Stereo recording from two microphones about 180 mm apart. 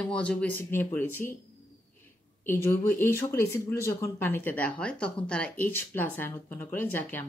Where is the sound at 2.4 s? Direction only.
10° left (ahead or behind).